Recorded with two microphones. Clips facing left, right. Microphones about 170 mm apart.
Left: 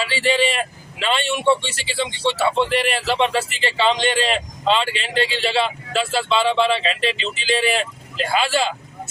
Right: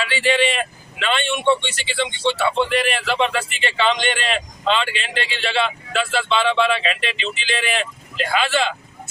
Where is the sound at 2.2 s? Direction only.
5° left (ahead or behind).